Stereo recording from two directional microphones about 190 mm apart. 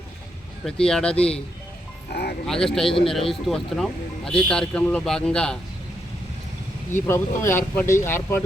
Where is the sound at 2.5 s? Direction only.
Centre (ahead or behind).